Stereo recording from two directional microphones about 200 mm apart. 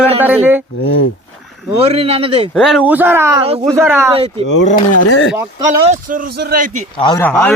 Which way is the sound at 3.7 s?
10° right (ahead or behind).